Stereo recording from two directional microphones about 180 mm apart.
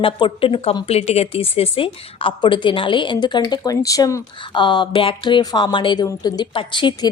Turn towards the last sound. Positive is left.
turn(degrees=25)  # may be behind; listen again after turning